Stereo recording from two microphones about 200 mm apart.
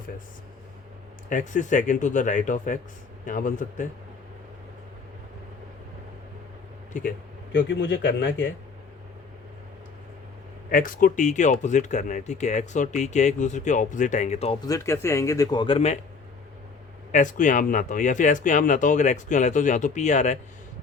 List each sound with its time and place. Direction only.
1.3 s speech: 40° left (ahead or behind)
6.9 s speech: 40° left (ahead or behind)
7.5 s a man's voice: 65° left (ahead or behind)
10.7 s speech: 45° left (ahead or behind)
14.7 s speech: 15° left (ahead or behind); by 16.0 s 30° left (ahead or behind)
17.1 s speech: 40° left (ahead or behind)